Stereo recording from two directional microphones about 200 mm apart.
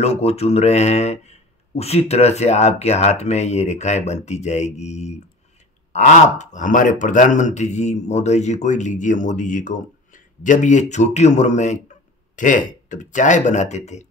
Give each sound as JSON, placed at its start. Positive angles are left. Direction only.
{"t": 0.0, "sound": "speech", "side_deg": 30}